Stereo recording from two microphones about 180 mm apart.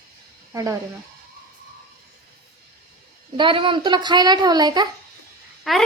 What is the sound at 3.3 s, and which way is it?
A child's voice, 30° right (ahead or behind).